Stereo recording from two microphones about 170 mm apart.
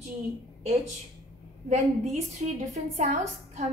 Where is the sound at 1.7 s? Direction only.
45° right (ahead or behind).